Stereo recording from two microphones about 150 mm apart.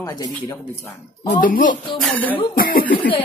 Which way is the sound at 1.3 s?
65° left (ahead or behind).